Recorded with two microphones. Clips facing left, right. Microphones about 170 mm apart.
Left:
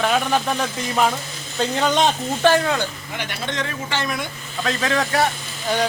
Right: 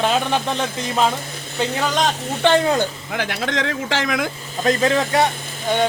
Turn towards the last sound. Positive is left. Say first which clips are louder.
# right 2 dB
turn(degrees=-20)  # may be behind; listen again after turning